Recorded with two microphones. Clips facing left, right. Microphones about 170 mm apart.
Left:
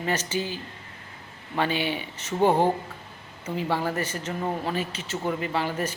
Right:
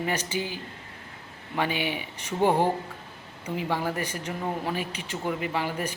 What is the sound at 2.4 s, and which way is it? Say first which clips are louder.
Speech: left 2 dB; 15° left (ahead or behind).